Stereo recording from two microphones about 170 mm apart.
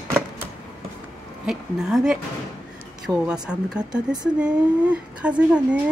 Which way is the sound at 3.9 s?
25° right (ahead or behind).